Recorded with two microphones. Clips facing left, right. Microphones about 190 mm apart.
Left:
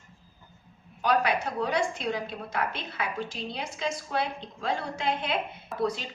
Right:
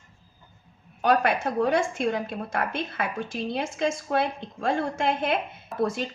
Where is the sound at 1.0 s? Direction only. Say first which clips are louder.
Right 3 dB; 50° right (ahead or behind).